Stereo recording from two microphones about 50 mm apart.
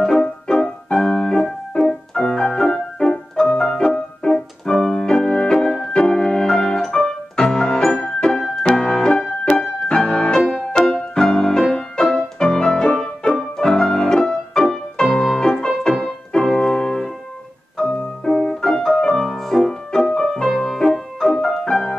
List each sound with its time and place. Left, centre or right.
0.2 s music: centre
9.4 s music: centre
15.0 s music: centre
20.4 s music: centre